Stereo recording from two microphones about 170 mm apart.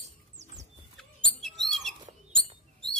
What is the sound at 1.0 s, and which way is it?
Bird, centre (ahead or behind).